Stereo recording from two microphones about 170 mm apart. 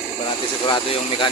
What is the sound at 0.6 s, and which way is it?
Speech, 30° left (ahead or behind).